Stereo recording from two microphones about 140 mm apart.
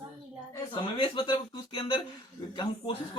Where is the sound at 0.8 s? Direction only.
35° left (ahead or behind).